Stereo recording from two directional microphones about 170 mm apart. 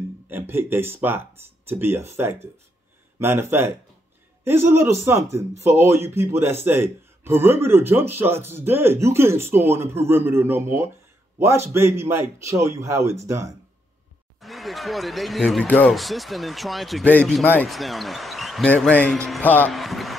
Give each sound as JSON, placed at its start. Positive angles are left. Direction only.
{"t": 0.3, "sound": "speech", "side_deg": -15}
{"t": 14.4, "sound": "speech", "side_deg": 0}
{"t": 19.7, "sound": "a sound", "side_deg": 0}